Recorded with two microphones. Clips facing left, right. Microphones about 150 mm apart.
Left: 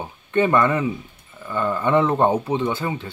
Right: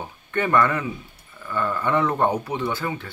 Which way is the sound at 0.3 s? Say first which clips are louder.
Left 3 dB; 20° left (ahead or behind).